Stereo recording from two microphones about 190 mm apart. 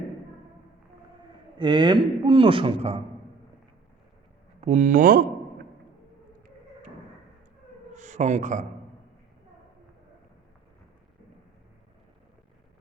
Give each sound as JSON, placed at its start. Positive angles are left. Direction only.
{"t": 1.5, "sound": "a man's voice", "side_deg": -25}
{"t": 4.6, "sound": "speech", "side_deg": -40}
{"t": 7.9, "sound": "speech", "side_deg": -40}